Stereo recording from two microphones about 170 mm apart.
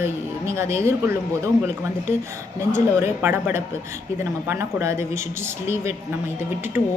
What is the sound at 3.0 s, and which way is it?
Speech, 10° right (ahead or behind).